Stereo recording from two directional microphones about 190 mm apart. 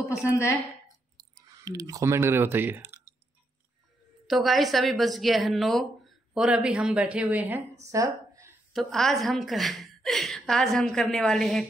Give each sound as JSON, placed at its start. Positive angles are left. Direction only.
{"t": 0.1, "sound": "a woman's voice", "side_deg": 15}
{"t": 1.5, "sound": "speech", "side_deg": -20}
{"t": 4.3, "sound": "a woman's voice", "side_deg": 0}
{"t": 7.9, "sound": "a sound", "side_deg": -15}
{"t": 8.7, "sound": "a woman's voice", "side_deg": 0}